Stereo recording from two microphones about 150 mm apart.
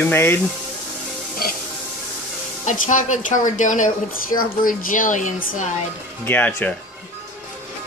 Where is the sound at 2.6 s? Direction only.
55° left (ahead or behind).